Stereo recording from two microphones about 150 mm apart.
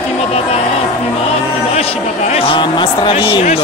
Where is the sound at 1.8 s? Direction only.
45° left (ahead or behind).